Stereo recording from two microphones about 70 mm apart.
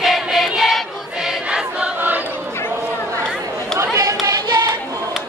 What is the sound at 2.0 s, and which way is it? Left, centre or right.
Choir, right.